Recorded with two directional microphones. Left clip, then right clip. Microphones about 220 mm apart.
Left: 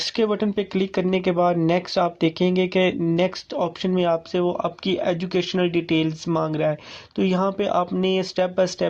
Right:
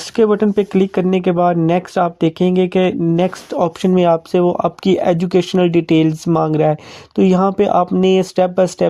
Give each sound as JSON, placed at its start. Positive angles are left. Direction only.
{"t": 0.2, "sound": "speech", "side_deg": -25}